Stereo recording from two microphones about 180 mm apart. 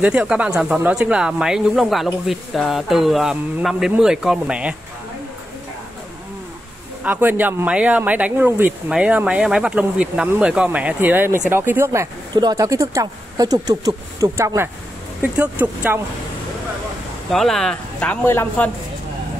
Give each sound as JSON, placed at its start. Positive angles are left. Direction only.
{"t": 0.0, "sound": "speech", "side_deg": -5}
{"t": 7.0, "sound": "speech", "side_deg": -10}
{"t": 17.3, "sound": "speech", "side_deg": 0}